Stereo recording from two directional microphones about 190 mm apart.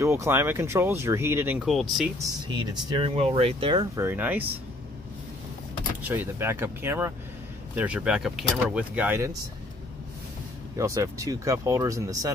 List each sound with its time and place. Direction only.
0.0 s speech: 15° right (ahead or behind)
2.1 s speech: 20° right (ahead or behind)
6.0 s speech: 10° right (ahead or behind)
10.8 s speech: 15° right (ahead or behind)